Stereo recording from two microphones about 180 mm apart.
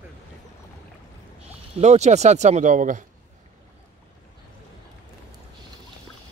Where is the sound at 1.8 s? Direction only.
40° right (ahead or behind).